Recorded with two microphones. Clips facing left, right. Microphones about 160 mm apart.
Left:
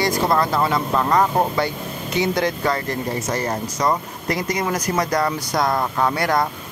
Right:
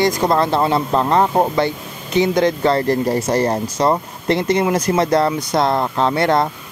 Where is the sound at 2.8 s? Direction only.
35° right (ahead or behind).